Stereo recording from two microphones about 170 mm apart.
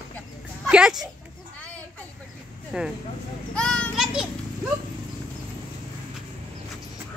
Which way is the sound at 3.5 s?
5° left (ahead or behind).